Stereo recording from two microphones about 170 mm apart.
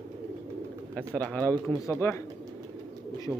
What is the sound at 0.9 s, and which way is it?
A man's voice, 10° left (ahead or behind).